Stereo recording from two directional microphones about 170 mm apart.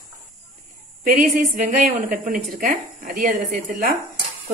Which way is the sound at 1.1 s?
55° right (ahead or behind).